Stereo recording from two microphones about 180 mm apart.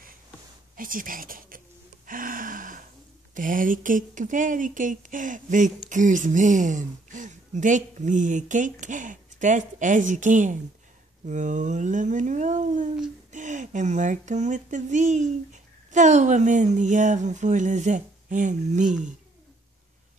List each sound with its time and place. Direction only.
0.7 s speech: 50° right (ahead or behind)
2.0 s a sound: 50° right (ahead or behind)
3.3 s speech: 50° right (ahead or behind)